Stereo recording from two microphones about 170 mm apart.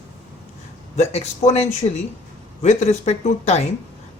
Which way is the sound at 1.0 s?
40° left (ahead or behind).